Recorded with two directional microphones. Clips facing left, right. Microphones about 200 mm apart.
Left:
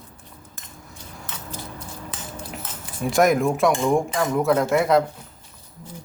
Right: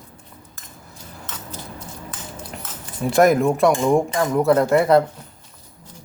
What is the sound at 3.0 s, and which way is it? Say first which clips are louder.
Speech: right 3 dB; centre (ahead or behind).